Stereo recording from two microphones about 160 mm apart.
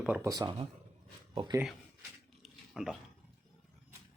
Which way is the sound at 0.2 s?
20° right (ahead or behind).